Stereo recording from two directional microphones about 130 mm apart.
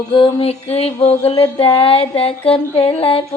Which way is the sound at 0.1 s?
40° left (ahead or behind).